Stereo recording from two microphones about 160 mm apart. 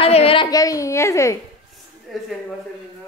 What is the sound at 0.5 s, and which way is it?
Speech, 20° left (ahead or behind).